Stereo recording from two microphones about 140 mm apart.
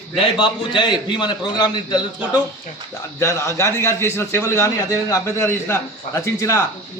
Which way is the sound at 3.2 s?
20° left (ahead or behind).